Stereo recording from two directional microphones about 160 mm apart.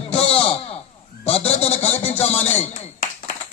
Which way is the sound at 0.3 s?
40° left (ahead or behind).